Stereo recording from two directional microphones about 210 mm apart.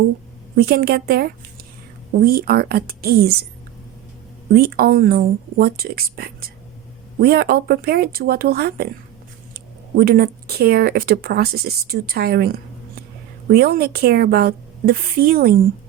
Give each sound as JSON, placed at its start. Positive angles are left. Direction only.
{"t": 0.5, "sound": "speech", "side_deg": -50}
{"t": 4.5, "sound": "speech", "side_deg": -45}
{"t": 10.0, "sound": "speech", "side_deg": -45}